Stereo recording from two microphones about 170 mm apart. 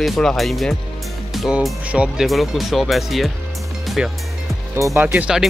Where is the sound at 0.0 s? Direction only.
Centre (ahead or behind).